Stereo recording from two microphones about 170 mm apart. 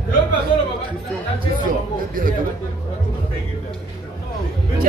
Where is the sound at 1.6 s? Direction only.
55° right (ahead or behind).